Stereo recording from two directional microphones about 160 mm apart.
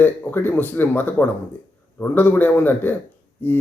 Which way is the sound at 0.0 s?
15° left (ahead or behind).